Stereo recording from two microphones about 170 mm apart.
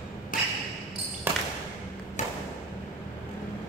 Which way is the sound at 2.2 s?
45° left (ahead or behind).